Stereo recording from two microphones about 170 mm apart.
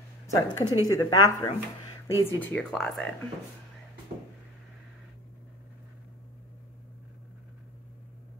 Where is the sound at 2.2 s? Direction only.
10° left (ahead or behind).